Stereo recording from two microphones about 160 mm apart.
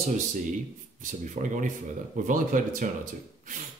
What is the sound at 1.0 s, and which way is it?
A man's voice, 55° right (ahead or behind).